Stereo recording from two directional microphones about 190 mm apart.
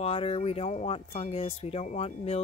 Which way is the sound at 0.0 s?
30° left (ahead or behind).